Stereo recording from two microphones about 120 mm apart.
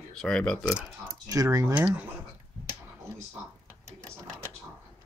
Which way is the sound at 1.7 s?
10° right (ahead or behind).